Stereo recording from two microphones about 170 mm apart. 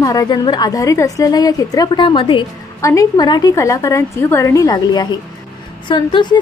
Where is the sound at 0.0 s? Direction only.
20° left (ahead or behind).